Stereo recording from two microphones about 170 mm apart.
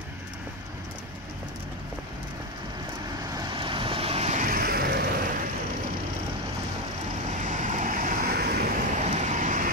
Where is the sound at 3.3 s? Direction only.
30° right (ahead or behind); by 5.1 s 65° right (ahead or behind).